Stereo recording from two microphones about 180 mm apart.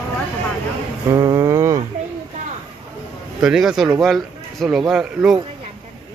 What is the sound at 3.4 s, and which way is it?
Speech, 5° right (ahead or behind).